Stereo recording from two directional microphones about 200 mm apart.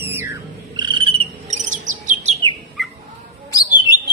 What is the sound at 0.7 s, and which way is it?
Insect, 25° right (ahead or behind).